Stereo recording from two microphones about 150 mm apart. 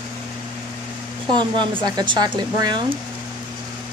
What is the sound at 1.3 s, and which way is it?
Speech, 30° right (ahead or behind).